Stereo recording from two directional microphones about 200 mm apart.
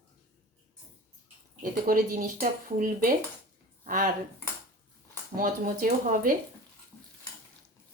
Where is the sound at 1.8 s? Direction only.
45° right (ahead or behind).